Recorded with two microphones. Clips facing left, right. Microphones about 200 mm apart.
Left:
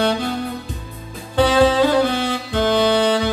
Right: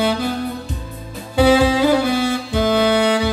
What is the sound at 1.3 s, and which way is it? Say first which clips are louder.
Saxophone: right 1 dB; 10° right (ahead or behind).